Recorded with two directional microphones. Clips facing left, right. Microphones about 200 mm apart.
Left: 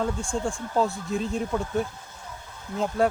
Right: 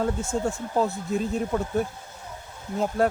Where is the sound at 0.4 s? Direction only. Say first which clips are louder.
Left 1 dB; 20° right (ahead or behind).